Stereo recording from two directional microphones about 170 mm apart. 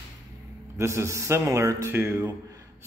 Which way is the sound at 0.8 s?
15° right (ahead or behind).